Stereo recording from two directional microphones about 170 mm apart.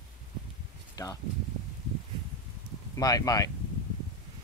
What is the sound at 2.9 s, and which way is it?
Speech, 20° left (ahead or behind).